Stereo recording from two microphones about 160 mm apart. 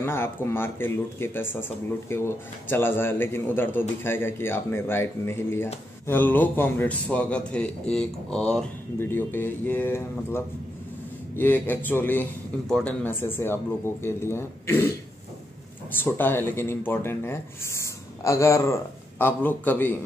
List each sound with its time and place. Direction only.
0.0 s speech: 15° left (ahead or behind)
8.9 s speech: 15° left (ahead or behind)
16.0 s speech: 10° left (ahead or behind)